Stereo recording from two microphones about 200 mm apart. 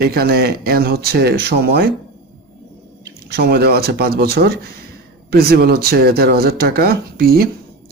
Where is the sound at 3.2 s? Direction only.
55° right (ahead or behind).